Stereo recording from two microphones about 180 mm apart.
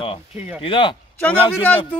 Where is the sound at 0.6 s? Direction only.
30° left (ahead or behind).